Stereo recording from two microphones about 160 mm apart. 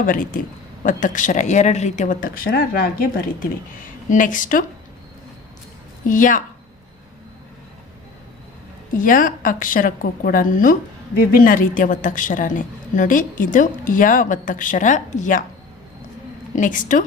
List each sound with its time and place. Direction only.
0.0 s a woman's voice: 60° left (ahead or behind)
4.1 s a woman's voice: 55° left (ahead or behind)
6.1 s a woman's voice: 55° left (ahead or behind)
9.0 s a woman's voice: 55° left (ahead or behind)
16.6 s a woman's voice: 55° left (ahead or behind)